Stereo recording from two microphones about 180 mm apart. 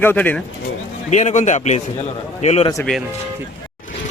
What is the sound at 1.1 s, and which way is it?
Speech, 40° left (ahead or behind).